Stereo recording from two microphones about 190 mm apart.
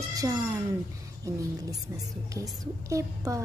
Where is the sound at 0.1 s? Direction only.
20° right (ahead or behind).